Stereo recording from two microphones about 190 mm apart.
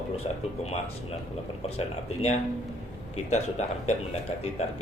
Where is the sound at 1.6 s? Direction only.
35° left (ahead or behind).